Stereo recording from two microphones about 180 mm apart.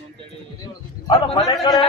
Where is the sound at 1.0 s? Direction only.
30° left (ahead or behind).